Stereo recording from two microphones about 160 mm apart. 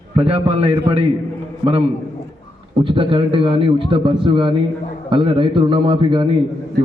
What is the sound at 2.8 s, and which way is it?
A man's voice, 35° right (ahead or behind).